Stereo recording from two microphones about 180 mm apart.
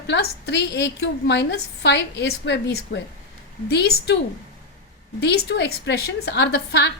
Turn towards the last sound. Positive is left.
turn(degrees=70)  # may be behind; listen again after turning